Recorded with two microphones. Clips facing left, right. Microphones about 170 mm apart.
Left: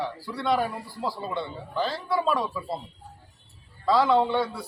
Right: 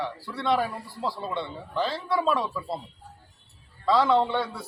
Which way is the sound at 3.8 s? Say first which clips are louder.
Even; centre (ahead or behind).